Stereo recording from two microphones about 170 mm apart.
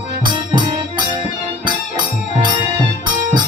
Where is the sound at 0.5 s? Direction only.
25° right (ahead or behind).